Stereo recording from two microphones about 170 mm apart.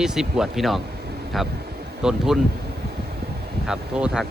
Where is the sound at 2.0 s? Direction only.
5° right (ahead or behind).